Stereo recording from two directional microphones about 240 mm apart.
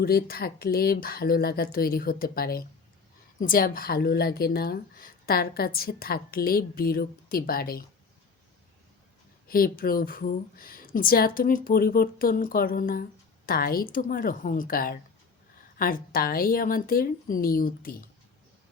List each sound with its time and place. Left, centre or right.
0.0 s a woman's voice: left
9.5 s a woman's voice: left